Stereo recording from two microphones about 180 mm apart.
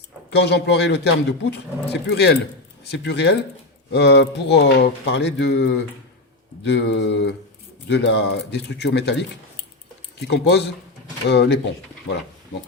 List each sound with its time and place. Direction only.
0.3 s speech: 70° left (ahead or behind)
10.2 s speech: 70° left (ahead or behind)